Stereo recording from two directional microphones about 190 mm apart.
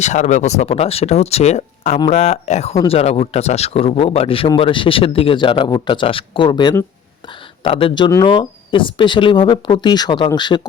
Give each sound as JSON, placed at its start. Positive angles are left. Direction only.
{"t": 0.0, "sound": "speech", "side_deg": 40}